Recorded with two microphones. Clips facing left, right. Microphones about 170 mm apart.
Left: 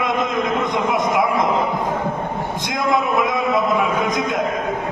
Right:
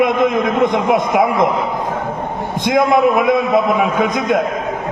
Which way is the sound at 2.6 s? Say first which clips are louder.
Right 9 dB; 60° right (ahead or behind).